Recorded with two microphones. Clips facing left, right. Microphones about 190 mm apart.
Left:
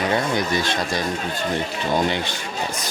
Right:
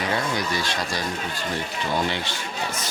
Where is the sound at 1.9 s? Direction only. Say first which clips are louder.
Left 4 dB; 15° left (ahead or behind).